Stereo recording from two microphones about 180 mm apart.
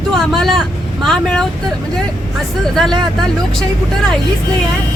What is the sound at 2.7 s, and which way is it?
Speech, centre (ahead or behind).